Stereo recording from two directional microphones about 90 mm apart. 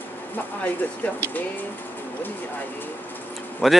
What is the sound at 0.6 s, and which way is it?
Speech, 20° left (ahead or behind).